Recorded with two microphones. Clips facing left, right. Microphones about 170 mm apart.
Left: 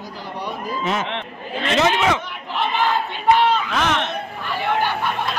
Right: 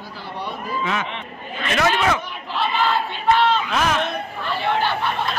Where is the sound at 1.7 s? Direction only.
20° left (ahead or behind).